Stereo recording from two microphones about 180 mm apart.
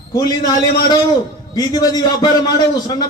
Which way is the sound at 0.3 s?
20° left (ahead or behind).